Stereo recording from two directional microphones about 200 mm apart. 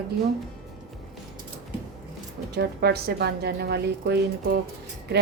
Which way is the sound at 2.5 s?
55° right (ahead or behind).